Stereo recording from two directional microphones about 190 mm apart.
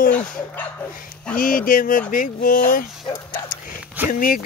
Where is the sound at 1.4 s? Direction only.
45° left (ahead or behind).